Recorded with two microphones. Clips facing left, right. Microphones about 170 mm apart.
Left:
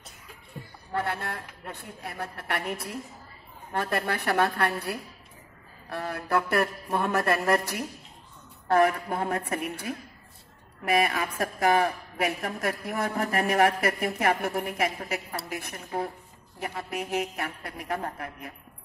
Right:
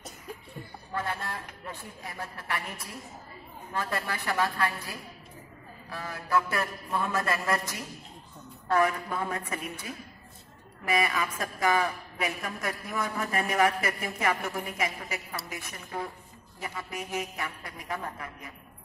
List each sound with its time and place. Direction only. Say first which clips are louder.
0.9 s a woman's voice: left 3 dB; 65° left (ahead or behind)